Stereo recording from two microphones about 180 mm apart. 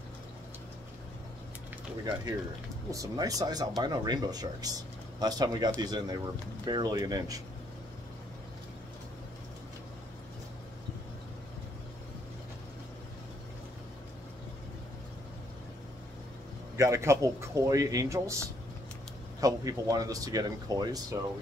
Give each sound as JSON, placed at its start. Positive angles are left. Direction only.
{"t": 2.9, "sound": "speech", "side_deg": -20}
{"t": 16.7, "sound": "a man's voice", "side_deg": -15}